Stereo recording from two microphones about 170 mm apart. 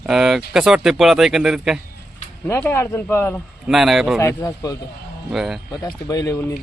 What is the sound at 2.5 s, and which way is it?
Speech, 15° left (ahead or behind).